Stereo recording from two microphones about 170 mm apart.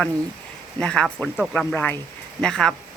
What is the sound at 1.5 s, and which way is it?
Speech, 10° left (ahead or behind).